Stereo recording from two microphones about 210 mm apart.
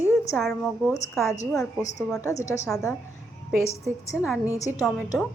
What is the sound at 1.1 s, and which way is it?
A woman's voice, 15° left (ahead or behind).